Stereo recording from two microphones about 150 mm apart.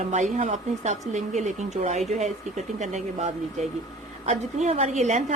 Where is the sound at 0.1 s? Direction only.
50° right (ahead or behind).